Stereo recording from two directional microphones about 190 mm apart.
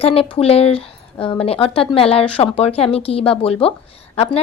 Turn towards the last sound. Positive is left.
turn(degrees=30)  # may be behind; listen again after turning